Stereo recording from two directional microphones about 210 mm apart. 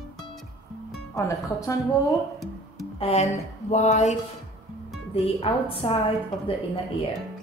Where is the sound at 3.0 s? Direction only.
30° left (ahead or behind).